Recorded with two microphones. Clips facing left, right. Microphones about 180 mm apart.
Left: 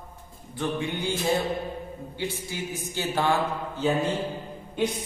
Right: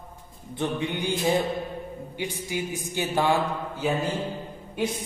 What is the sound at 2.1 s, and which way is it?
A man's voice, 15° right (ahead or behind).